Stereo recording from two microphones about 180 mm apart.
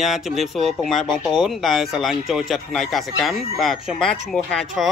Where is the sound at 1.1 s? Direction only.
25° left (ahead or behind).